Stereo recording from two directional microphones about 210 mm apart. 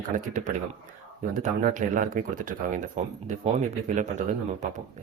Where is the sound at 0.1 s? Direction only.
40° right (ahead or behind).